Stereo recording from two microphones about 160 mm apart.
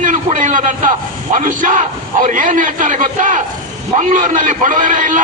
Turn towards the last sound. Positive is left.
turn(degrees=-55)  # may be behind; listen again after turning